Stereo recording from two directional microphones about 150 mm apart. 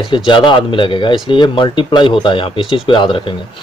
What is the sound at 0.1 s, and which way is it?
Speech, 30° left (ahead or behind).